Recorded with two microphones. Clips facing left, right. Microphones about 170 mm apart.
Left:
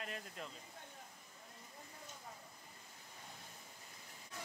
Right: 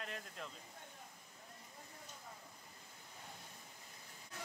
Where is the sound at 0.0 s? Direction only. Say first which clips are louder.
Left 1 dB; 5° left (ahead or behind).